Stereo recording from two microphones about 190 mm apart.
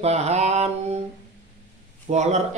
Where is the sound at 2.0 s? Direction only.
35° right (ahead or behind).